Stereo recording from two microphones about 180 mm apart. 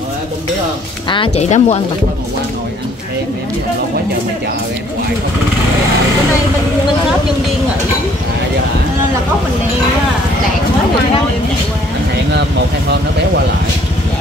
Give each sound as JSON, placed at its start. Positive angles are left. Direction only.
{"t": 1.0, "sound": "speech", "side_deg": 30}